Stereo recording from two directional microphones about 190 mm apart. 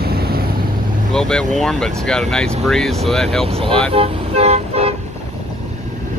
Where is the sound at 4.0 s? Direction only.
35° right (ahead or behind).